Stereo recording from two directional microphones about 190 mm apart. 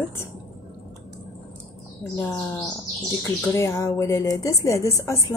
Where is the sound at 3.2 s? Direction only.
15° left (ahead or behind).